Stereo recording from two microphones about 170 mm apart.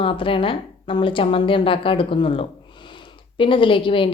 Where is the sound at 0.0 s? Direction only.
30° left (ahead or behind).